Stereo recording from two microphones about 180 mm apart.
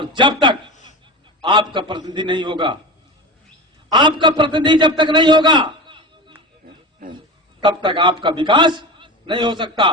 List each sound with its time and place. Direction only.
0.0 s a man's voice: 25° right (ahead or behind)
3.9 s a man's voice: 25° right (ahead or behind)